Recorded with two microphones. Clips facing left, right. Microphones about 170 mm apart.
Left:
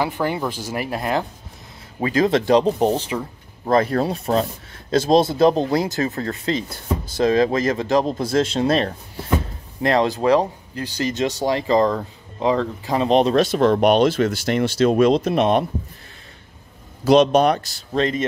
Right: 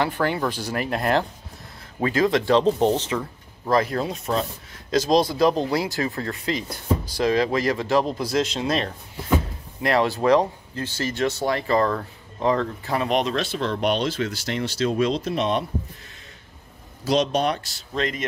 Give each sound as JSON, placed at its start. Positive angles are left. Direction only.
{"t": 0.0, "sound": "speech", "side_deg": 15}
{"t": 2.0, "sound": "speech", "side_deg": 20}
{"t": 3.6, "sound": "speech", "side_deg": 30}
{"t": 6.0, "sound": "speech", "side_deg": 35}
{"t": 8.3, "sound": "speech", "side_deg": 50}
{"t": 8.6, "sound": "speech", "side_deg": 35}
{"t": 9.8, "sound": "speech", "side_deg": 20}
{"t": 13.2, "sound": "speech", "side_deg": 40}
{"t": 17.0, "sound": "speech", "side_deg": 55}
{"t": 17.9, "sound": "speech", "side_deg": 30}